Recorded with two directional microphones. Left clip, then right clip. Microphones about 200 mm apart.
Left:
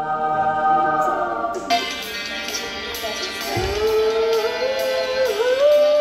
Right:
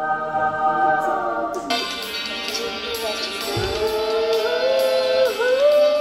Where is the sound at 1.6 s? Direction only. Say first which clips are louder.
Left 2 dB; 20° right (ahead or behind).